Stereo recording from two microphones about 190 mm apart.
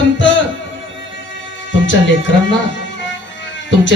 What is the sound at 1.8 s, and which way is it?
Speech, 75° left (ahead or behind).